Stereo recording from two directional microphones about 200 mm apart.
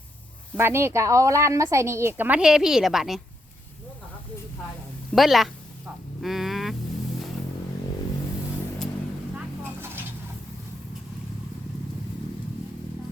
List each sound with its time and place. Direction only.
0.5 s a woman's voice: 10° right (ahead or behind)
5.1 s music: centre (ahead or behind)